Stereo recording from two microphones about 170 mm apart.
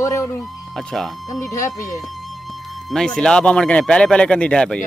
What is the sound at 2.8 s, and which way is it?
Speech, 5° left (ahead or behind).